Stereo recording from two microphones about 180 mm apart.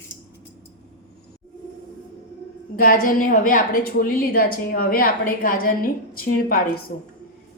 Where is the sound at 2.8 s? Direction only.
50° left (ahead or behind).